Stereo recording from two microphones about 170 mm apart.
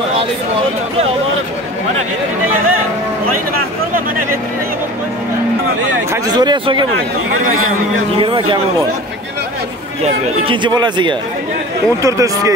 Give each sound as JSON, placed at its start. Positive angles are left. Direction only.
{"t": 6.2, "sound": "speech", "side_deg": -25}
{"t": 8.1, "sound": "speech", "side_deg": -30}
{"t": 10.0, "sound": "speech", "side_deg": -35}